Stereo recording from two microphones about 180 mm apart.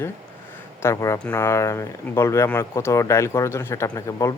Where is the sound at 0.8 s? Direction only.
15° left (ahead or behind).